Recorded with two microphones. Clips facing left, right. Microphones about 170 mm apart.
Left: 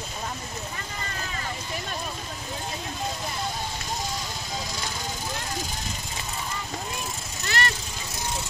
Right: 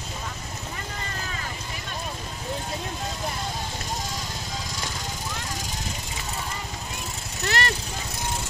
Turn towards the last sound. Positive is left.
turn(degrees=-65)  # may be behind; listen again after turning